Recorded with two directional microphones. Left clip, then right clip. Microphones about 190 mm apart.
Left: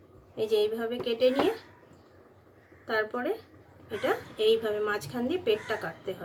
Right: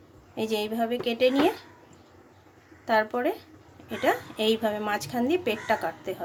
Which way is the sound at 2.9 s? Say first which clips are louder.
Right 5 dB; 50° right (ahead or behind).